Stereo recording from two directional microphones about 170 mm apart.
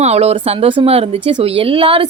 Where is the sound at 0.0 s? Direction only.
40° right (ahead or behind).